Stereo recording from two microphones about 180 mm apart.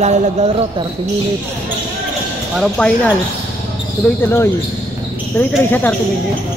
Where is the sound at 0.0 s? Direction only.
40° right (ahead or behind).